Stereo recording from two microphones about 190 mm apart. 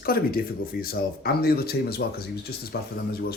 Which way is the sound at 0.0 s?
50° left (ahead or behind).